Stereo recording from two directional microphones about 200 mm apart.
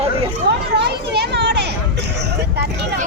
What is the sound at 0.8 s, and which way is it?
Children playing, 55° right (ahead or behind).